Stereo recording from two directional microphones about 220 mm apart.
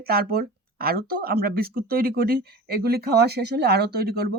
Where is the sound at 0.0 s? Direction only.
45° right (ahead or behind).